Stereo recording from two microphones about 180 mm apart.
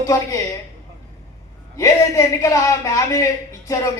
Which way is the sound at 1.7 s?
15° left (ahead or behind).